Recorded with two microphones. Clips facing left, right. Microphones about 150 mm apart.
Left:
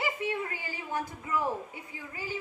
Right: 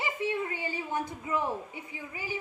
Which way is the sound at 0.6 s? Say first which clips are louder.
Right 2 dB; 20° right (ahead or behind).